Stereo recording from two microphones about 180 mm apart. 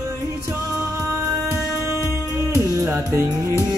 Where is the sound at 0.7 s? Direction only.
5° right (ahead or behind).